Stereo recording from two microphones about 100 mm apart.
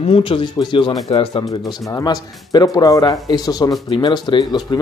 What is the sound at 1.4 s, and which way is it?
Speech, 35° left (ahead or behind).